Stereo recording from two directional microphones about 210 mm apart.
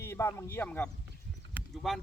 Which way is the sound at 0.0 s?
15° left (ahead or behind).